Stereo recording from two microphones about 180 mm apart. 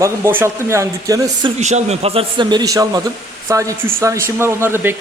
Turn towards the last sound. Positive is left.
turn(degrees=-15)  # may be behind; listen again after turning